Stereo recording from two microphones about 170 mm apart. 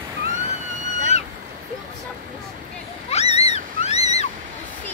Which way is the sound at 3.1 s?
40° left (ahead or behind).